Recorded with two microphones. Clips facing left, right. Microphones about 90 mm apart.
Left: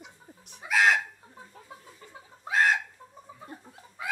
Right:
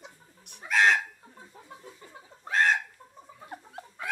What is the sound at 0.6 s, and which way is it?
Chicken, 5° left (ahead or behind).